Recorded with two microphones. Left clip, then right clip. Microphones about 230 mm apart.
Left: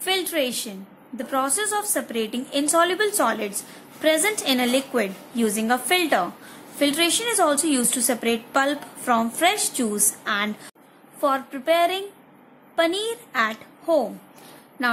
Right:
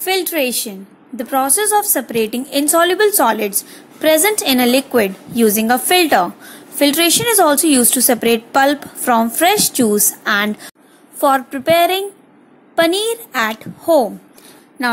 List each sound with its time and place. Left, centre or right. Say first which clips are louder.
0.0 s a woman's voice: right 6 dB; centre